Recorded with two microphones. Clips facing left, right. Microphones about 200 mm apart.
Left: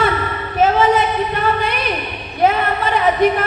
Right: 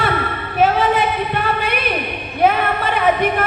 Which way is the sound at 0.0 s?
55° right (ahead or behind).